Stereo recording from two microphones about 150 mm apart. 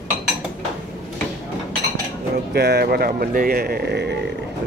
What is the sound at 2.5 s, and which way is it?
Speech, 90° right.